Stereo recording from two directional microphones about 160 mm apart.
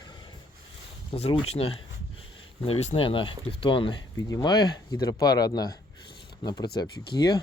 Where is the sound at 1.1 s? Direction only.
35° left (ahead or behind).